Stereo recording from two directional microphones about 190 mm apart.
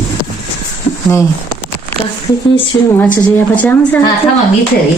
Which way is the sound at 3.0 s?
10° left (ahead or behind).